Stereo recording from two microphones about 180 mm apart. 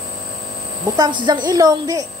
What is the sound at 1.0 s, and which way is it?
Speech, 25° right (ahead or behind).